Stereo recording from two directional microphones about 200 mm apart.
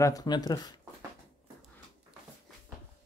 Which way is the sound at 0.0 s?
20° left (ahead or behind).